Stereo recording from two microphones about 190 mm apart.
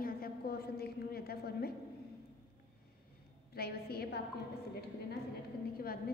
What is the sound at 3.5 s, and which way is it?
Speech, 55° left (ahead or behind).